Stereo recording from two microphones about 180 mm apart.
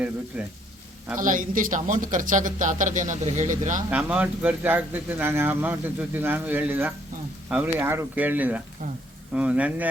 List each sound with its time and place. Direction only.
0.3 s speech: 10° right (ahead or behind)
1.2 s speech: 45° right (ahead or behind)
3.8 s speech: 10° right (ahead or behind)